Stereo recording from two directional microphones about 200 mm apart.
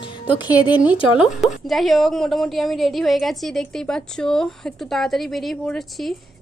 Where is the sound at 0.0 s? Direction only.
25° left (ahead or behind).